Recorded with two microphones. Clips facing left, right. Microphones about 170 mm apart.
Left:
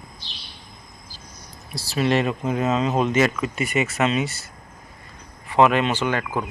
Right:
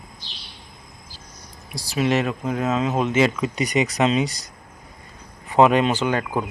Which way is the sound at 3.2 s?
20° right (ahead or behind).